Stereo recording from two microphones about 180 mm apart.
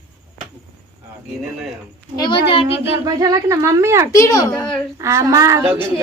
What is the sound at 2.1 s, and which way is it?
Speech, 25° left (ahead or behind).